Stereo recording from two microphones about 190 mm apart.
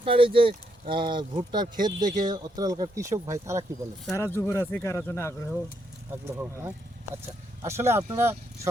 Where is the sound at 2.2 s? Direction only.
20° right (ahead or behind).